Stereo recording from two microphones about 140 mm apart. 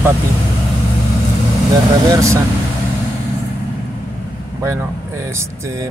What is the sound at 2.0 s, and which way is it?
Speech, 20° right (ahead or behind).